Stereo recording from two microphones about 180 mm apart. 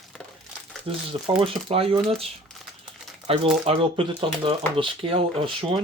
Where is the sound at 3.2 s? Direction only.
35° right (ahead or behind).